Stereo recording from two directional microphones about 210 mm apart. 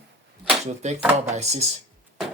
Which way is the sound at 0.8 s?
30° right (ahead or behind).